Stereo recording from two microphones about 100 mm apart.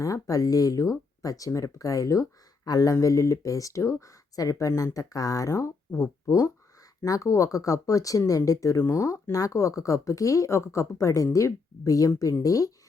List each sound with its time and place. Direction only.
0.0 s speech: 35° left (ahead or behind)